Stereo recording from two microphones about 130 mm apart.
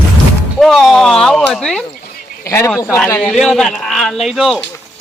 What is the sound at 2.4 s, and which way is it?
Speech, 20° left (ahead or behind).